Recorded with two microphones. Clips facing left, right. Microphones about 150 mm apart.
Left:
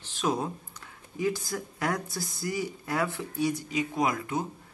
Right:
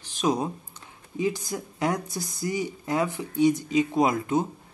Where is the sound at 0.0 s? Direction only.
15° right (ahead or behind).